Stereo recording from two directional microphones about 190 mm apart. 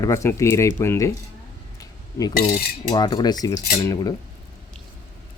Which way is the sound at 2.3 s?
55° left (ahead or behind).